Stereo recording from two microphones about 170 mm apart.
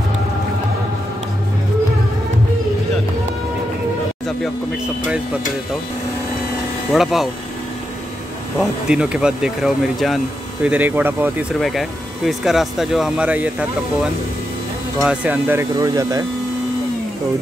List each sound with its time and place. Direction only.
6.9 s speech: centre (ahead or behind)
8.5 s speech: 5° right (ahead or behind)
11.6 s speech: centre (ahead or behind); by 16.3 s 20° right (ahead or behind)